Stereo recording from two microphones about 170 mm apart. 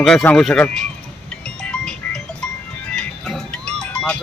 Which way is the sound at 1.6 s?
5° left (ahead or behind).